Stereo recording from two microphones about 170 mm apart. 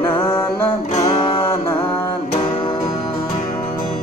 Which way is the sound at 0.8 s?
35° left (ahead or behind).